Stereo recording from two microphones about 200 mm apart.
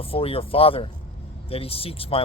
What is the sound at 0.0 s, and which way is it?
Speech, 30° left (ahead or behind).